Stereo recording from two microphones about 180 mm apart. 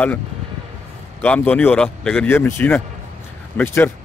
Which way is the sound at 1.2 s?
10° left (ahead or behind).